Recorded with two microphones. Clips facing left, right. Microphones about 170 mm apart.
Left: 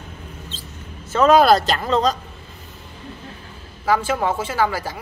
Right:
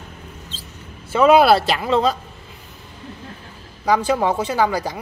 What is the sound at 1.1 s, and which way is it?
Speech, 10° right (ahead or behind).